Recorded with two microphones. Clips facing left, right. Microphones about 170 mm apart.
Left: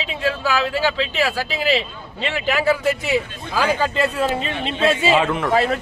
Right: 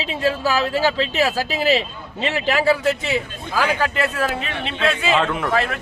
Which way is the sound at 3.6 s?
15° left (ahead or behind).